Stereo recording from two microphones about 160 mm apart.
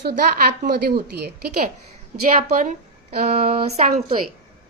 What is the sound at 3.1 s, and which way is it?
Speech, 65° right (ahead or behind).